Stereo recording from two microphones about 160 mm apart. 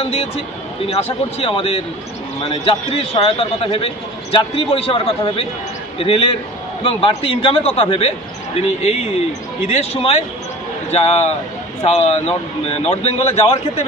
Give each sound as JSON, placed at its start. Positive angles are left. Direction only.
{"t": 0.0, "sound": "a man's voice", "side_deg": 40}